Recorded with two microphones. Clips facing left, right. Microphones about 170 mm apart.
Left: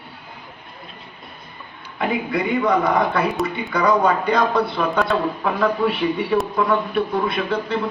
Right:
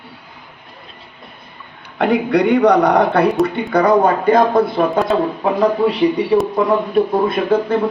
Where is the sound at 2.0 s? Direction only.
80° right.